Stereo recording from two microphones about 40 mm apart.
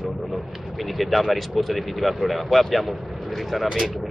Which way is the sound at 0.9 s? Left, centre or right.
Centre.